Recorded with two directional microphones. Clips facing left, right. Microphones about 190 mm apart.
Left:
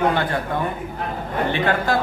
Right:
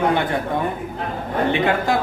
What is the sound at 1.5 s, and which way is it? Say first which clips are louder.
Speech: right 1 dB; 20° right (ahead or behind).